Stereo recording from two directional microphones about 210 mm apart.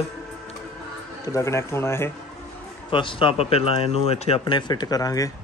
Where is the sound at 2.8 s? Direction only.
25° left (ahead or behind).